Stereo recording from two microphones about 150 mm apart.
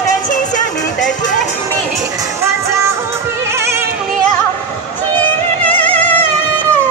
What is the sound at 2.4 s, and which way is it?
Music, 20° right (ahead or behind).